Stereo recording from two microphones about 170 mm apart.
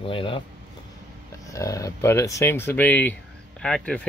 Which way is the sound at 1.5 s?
20° left (ahead or behind).